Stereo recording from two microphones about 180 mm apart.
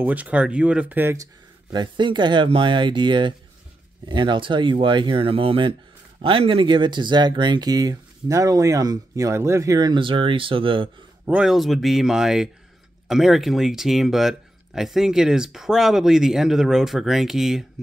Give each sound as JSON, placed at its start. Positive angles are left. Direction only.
{"t": 0.0, "sound": "speech", "side_deg": -10}
{"t": 11.2, "sound": "speech", "side_deg": -5}